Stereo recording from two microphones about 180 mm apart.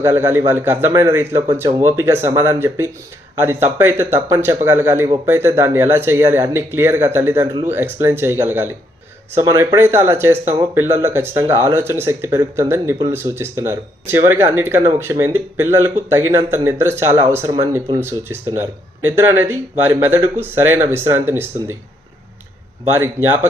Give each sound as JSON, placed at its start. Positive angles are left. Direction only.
{"t": 0.0, "sound": "speech", "side_deg": -15}
{"t": 22.9, "sound": "speech", "side_deg": -15}